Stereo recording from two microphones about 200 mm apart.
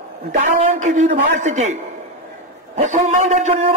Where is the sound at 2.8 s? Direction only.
35° right (ahead or behind).